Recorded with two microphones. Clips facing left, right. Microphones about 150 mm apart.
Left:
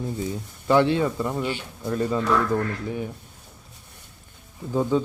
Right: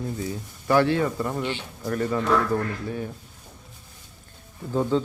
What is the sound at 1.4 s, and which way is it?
Speech, 10° left (ahead or behind).